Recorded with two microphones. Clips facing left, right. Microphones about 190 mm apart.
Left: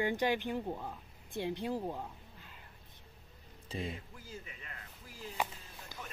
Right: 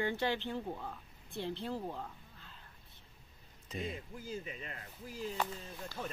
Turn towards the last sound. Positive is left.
turn(degrees=15)  # may be behind; listen again after turning